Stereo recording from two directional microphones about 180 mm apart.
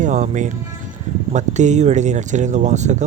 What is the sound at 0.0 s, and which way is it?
Speech, 45° right (ahead or behind).